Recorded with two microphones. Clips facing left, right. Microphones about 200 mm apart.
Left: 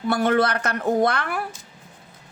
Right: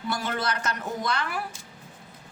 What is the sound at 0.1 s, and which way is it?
A woman's voice, 60° left (ahead or behind).